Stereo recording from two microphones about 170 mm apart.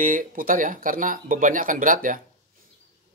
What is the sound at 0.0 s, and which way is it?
Speech, 50° right (ahead or behind).